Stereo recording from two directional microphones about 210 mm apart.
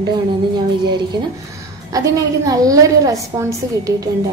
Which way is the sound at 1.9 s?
15° right (ahead or behind).